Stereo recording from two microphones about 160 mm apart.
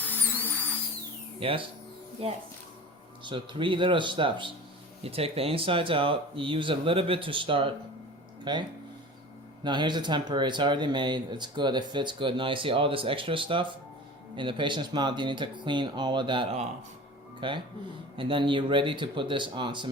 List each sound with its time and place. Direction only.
0.0 s a sound: 10° left (ahead or behind)
1.4 s speech: 35° right (ahead or behind)
9.6 s speech: 30° right (ahead or behind)